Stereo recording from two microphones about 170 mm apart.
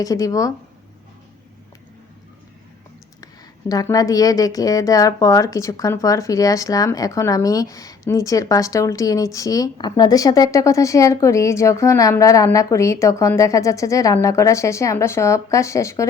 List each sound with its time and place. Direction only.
0.0 s a woman's voice: 20° left (ahead or behind)
3.7 s a woman's voice: 20° left (ahead or behind)